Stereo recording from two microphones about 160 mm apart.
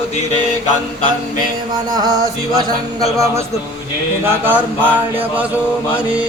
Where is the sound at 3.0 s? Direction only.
20° right (ahead or behind).